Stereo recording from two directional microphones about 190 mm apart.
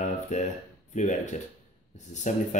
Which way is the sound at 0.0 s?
40° left (ahead or behind).